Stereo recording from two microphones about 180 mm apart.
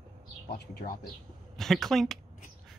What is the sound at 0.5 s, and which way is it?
Speech, 55° left (ahead or behind).